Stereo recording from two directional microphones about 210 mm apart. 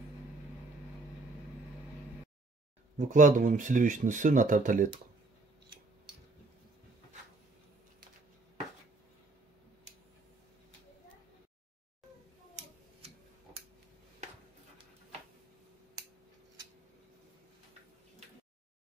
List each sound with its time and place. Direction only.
3.0 s speech: 35° right (ahead or behind)